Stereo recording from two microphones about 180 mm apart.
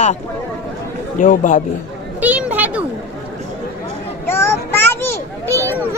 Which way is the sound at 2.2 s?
10° right (ahead or behind).